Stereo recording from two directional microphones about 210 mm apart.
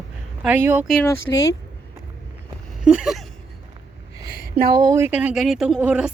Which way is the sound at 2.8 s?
5° right (ahead or behind).